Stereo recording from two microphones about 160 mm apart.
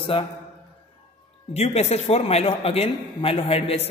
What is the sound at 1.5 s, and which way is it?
A man's voice, 40° left (ahead or behind).